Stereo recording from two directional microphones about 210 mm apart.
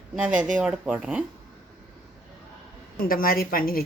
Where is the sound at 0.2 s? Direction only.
5° right (ahead or behind).